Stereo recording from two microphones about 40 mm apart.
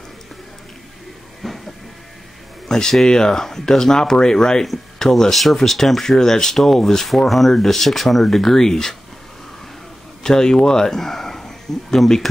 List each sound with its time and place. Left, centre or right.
1.4 s music: centre
2.7 s speech: centre
10.2 s speech: centre